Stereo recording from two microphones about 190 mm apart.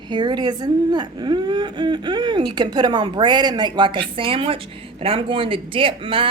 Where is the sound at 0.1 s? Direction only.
25° right (ahead or behind).